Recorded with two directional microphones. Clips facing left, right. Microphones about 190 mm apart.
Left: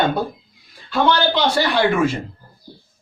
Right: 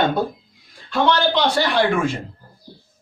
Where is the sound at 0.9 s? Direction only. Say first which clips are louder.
Even; 5° left (ahead or behind).